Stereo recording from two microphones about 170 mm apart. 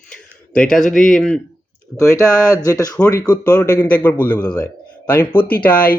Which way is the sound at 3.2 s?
10° left (ahead or behind).